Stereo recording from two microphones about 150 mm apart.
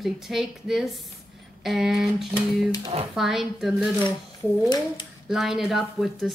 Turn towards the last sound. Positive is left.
turn(degrees=0)  # may be behind; listen again after turning